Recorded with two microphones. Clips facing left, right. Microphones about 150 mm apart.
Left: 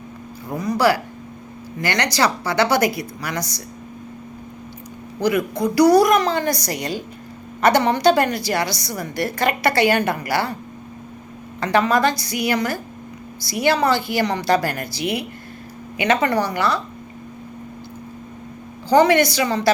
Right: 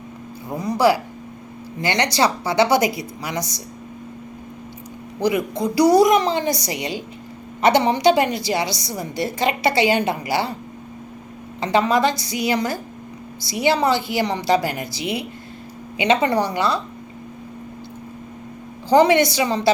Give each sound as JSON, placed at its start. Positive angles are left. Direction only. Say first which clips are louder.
{"t": 0.6, "sound": "a woman's voice", "louder": "right 1 dB", "side_deg": -25}
{"t": 5.2, "sound": "a woman's voice", "louder": "left 1 dB", "side_deg": -20}
{"t": 11.6, "sound": "a woman's voice", "louder": "even", "side_deg": -20}
{"t": 18.9, "sound": "a woman's voice", "louder": "even", "side_deg": -25}